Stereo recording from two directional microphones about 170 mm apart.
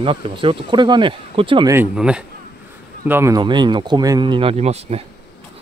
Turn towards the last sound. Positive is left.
turn(degrees=-40)  # may be behind; listen again after turning